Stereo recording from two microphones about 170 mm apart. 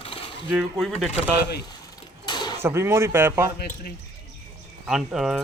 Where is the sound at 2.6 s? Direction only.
15° right (ahead or behind).